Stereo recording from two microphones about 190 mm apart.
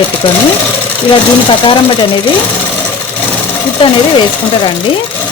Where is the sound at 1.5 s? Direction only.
25° left (ahead or behind).